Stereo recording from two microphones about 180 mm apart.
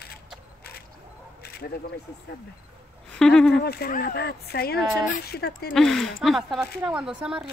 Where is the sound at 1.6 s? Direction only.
65° left (ahead or behind).